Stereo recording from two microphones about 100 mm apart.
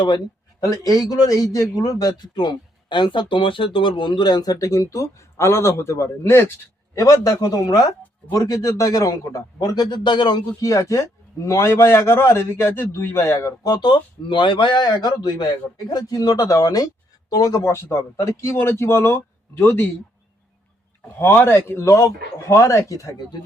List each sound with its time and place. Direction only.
0.6 s a man's voice: 35° left (ahead or behind)
13.7 s a man's voice: 50° left (ahead or behind); by 19.9 s 25° left (ahead or behind)
21.2 s speech: 20° left (ahead or behind); by 23.4 s 40° left (ahead or behind)